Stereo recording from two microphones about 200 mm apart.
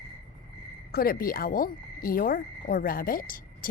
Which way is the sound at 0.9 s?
45° left (ahead or behind).